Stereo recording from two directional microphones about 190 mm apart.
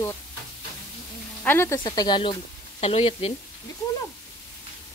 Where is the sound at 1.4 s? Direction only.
15° left (ahead or behind); by 3.3 s 30° left (ahead or behind).